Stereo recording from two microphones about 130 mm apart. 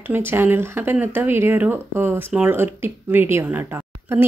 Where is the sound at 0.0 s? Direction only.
15° right (ahead or behind).